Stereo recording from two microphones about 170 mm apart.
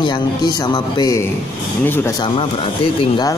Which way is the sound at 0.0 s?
25° left (ahead or behind).